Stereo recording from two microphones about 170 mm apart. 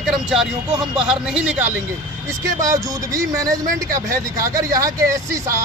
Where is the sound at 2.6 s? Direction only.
20° right (ahead or behind).